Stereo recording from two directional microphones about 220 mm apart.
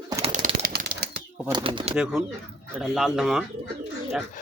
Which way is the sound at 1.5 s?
20° right (ahead or behind).